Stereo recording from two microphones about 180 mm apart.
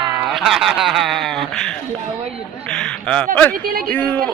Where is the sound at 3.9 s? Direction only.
10° left (ahead or behind).